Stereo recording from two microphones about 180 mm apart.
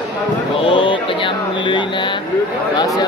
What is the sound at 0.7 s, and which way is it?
Speech, 30° left (ahead or behind).